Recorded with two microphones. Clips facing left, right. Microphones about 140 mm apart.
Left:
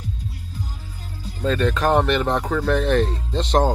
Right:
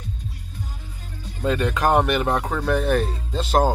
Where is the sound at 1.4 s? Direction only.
10° right (ahead or behind).